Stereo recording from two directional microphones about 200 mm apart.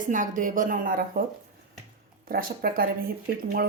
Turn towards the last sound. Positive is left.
turn(degrees=-45)  # may be behind; listen again after turning